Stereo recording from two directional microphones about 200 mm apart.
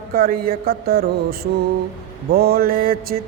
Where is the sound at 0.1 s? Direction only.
50° right (ahead or behind).